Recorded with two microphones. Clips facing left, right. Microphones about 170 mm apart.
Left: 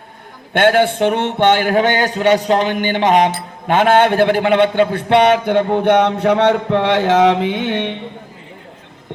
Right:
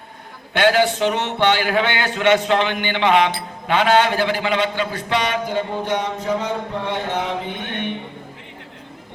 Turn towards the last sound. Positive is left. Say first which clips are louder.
# left 8 dB
turn(degrees=90)